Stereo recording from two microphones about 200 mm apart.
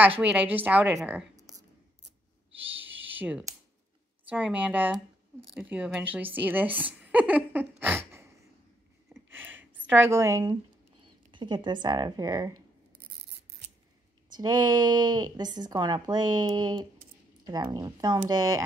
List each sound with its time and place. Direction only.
0.2 s speech: 5° right (ahead or behind)
2.7 s computer keyboard: 10° right (ahead or behind)
4.3 s speech: 10° right (ahead or behind)
9.1 s a sound: 10° right (ahead or behind)
9.9 s speech: 10° right (ahead or behind)
14.3 s speech: 20° right (ahead or behind)